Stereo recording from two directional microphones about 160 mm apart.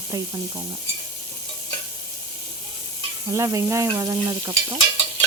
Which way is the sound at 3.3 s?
20° right (ahead or behind).